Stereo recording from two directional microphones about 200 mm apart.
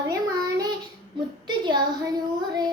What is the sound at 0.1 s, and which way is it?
Child singing, 15° right (ahead or behind).